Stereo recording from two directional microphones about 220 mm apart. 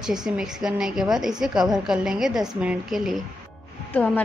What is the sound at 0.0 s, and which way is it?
A woman's voice, centre (ahead or behind).